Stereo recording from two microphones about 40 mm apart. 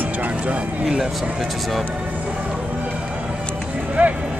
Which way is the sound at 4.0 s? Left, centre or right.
Right.